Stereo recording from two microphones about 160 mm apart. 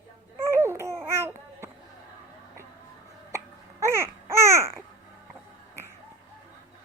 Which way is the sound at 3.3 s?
20° right (ahead or behind).